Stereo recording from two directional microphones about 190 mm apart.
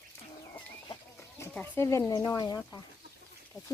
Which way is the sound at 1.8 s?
15° left (ahead or behind).